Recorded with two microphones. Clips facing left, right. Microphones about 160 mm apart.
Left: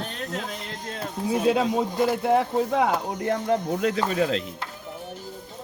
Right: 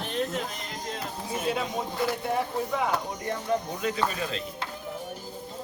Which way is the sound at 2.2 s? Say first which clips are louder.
Left 7 dB; 90° left.